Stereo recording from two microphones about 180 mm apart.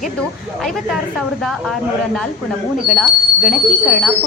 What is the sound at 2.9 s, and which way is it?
Speech, centre (ahead or behind).